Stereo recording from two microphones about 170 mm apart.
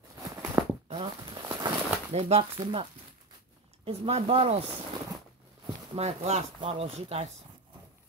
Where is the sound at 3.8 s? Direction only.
35° right (ahead or behind).